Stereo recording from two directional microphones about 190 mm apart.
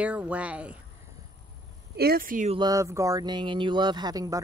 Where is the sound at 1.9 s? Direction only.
55° right (ahead or behind).